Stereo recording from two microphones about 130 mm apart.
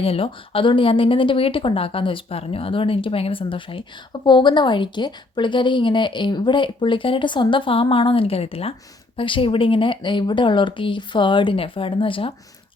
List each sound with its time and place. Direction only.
0.0 s a woman's voice: 45° left (ahead or behind)